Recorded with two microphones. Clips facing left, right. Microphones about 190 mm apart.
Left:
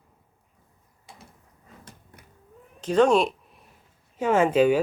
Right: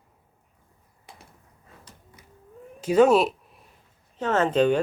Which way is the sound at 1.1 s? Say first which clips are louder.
Even; 60° right (ahead or behind).